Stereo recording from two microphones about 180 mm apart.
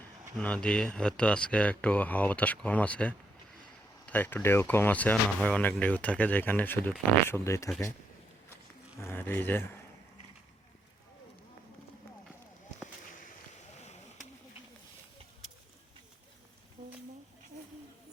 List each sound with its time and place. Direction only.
0.3 s speech: 5° left (ahead or behind)
9.0 s speech: 15° left (ahead or behind)
13.5 s a sound: 40° left (ahead or behind)